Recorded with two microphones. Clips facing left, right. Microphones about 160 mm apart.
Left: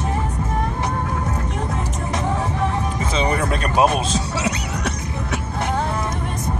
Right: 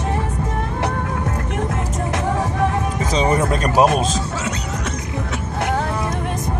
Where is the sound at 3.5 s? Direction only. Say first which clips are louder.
Right 1 dB; 40° right (ahead or behind).